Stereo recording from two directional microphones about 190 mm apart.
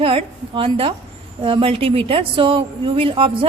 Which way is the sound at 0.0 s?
30° right (ahead or behind).